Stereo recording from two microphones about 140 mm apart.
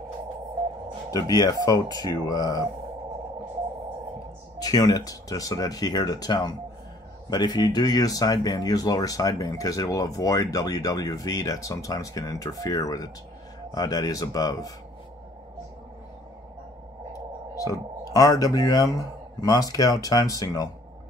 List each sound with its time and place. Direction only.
1.3 s speech: 25° left (ahead or behind)
4.6 s speech: 25° left (ahead or behind)
17.1 s speech: 25° left (ahead or behind)